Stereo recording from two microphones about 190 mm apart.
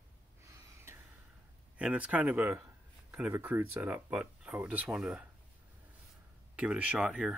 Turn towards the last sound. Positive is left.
turn(degrees=0)  # may be behind; listen again after turning